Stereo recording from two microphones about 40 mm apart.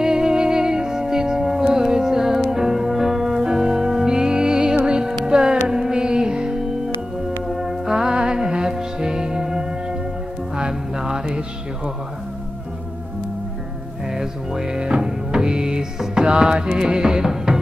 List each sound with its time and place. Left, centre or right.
0.0 s music: centre
8.1 s music: right
10.7 s music: centre
14.1 s music: centre